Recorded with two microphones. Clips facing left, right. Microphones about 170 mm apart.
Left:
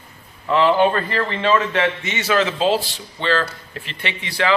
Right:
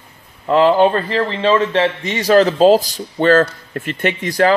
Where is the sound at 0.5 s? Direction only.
40° right (ahead or behind).